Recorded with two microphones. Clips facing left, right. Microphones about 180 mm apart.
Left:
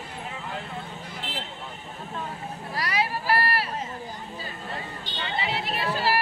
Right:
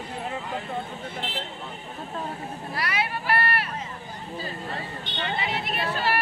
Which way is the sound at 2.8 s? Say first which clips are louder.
Left 2 dB; 35° left (ahead or behind).